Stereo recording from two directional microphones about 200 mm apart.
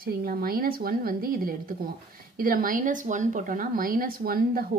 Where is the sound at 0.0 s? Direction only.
50° right (ahead or behind).